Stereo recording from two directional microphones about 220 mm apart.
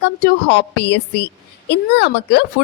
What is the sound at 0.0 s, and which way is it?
A woman's voice, 50° left (ahead or behind).